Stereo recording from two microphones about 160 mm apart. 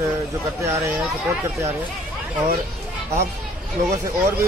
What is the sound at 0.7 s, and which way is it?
Speech, 15° right (ahead or behind).